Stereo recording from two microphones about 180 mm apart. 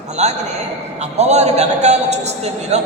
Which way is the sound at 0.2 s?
35° right (ahead or behind).